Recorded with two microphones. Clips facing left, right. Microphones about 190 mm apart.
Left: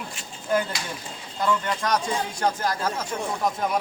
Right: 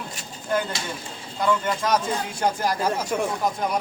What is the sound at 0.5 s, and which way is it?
Speech, 10° left (ahead or behind).